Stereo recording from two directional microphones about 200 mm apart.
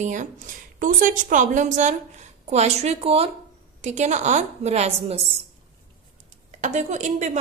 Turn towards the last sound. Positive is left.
turn(degrees=-35)  # may be behind; listen again after turning